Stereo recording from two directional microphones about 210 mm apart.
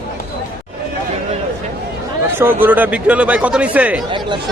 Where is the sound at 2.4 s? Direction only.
10° right (ahead or behind).